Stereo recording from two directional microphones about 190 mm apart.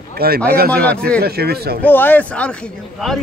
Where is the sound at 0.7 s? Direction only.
5° left (ahead or behind).